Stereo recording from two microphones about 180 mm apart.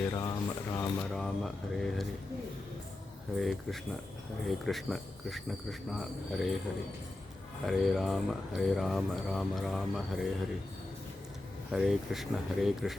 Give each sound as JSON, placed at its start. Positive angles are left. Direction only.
{"t": 0.1, "sound": "speech", "side_deg": 15}
{"t": 1.1, "sound": "speech", "side_deg": 0}
{"t": 3.3, "sound": "speech", "side_deg": 0}
{"t": 7.7, "sound": "speech", "side_deg": 0}
{"t": 11.7, "sound": "speech", "side_deg": 0}